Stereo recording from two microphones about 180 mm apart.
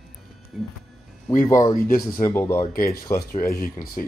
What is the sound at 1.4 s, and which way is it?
Speech, 20° left (ahead or behind).